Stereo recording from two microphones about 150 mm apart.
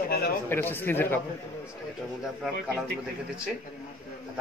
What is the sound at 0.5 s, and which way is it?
Speech, 15° left (ahead or behind).